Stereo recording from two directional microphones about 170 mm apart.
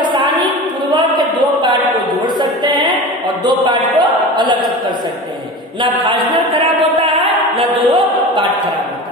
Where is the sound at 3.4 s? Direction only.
25° right (ahead or behind).